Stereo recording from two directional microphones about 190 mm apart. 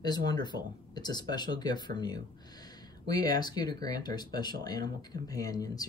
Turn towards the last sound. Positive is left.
turn(degrees=20)  # may be behind; listen again after turning